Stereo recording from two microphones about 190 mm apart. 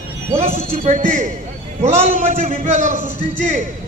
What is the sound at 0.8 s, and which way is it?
A man's voice, 40° right (ahead or behind).